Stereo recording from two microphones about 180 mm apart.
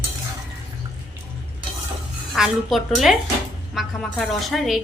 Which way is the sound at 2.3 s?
Centre (ahead or behind).